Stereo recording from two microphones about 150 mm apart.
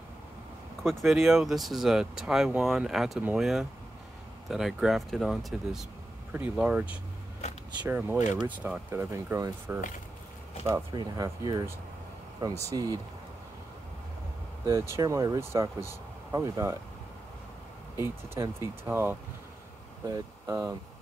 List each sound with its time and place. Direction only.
1.0 s speech: centre (ahead or behind)
7.4 s a sound: 45° left (ahead or behind)
7.8 s speech: 10° right (ahead or behind)
10.9 s speech: 25° right (ahead or behind)
14.7 s speech: 20° right (ahead or behind)
17.9 s speech: 15° right (ahead or behind)